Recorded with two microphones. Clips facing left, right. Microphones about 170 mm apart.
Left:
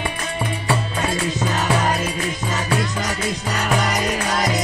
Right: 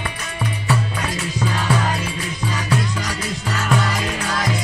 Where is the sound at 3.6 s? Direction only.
20° left (ahead or behind).